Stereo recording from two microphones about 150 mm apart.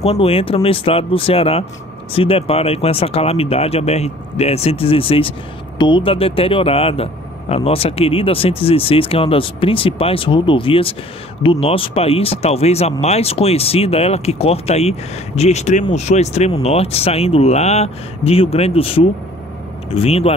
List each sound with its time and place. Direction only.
0.0 s speech: 40° left (ahead or behind)